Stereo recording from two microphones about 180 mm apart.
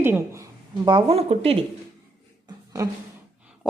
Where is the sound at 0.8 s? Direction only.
30° right (ahead or behind).